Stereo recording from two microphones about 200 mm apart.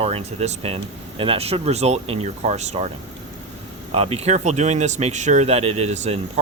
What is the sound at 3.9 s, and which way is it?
Speech, 30° right (ahead or behind).